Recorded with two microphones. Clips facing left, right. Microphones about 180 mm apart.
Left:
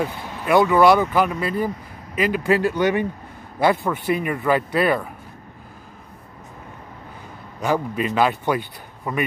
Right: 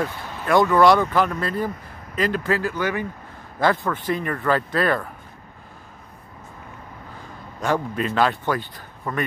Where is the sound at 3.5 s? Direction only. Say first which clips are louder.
Left 2 dB; 10° left (ahead or behind).